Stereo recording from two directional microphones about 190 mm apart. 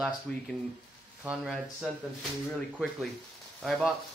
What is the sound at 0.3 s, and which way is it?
Speech, 5° left (ahead or behind).